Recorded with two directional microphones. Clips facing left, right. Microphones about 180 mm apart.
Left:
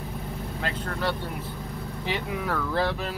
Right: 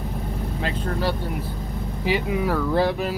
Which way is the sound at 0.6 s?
20° right (ahead or behind).